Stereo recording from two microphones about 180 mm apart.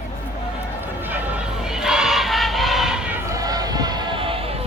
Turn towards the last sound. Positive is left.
turn(degrees=-30)  # may be behind; listen again after turning